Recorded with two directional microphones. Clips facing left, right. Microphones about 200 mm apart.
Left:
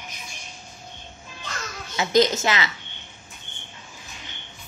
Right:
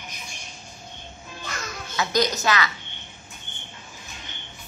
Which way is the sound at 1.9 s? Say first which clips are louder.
Left 4 dB; 25° left (ahead or behind).